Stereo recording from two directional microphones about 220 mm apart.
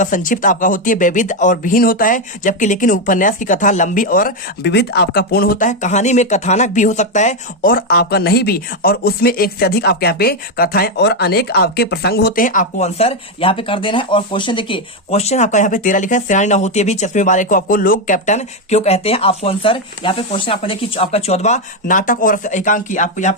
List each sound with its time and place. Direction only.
0.0 s speech: 35° left (ahead or behind)